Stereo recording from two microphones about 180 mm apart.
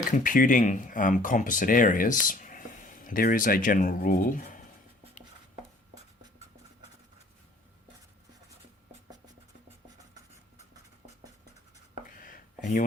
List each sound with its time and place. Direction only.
0.0 s speech: 50° left (ahead or behind)
9.0 s music: 20° right (ahead or behind)
12.1 s a sound: 50° left (ahead or behind)